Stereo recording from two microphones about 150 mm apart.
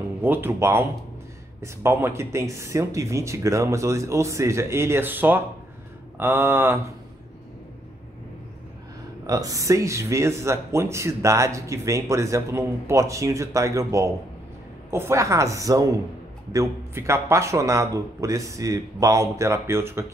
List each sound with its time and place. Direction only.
0.2 s speech: 15° right (ahead or behind)
9.2 s speech: 25° right (ahead or behind)